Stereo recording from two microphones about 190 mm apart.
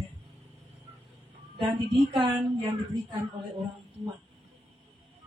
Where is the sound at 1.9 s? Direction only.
25° right (ahead or behind).